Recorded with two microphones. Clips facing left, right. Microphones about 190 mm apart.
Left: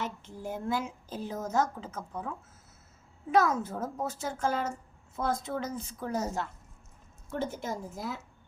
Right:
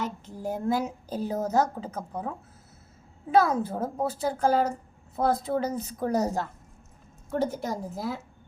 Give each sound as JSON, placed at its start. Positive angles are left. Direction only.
{"t": 0.0, "sound": "a woman's voice", "side_deg": -40}
{"t": 3.3, "sound": "a woman's voice", "side_deg": -35}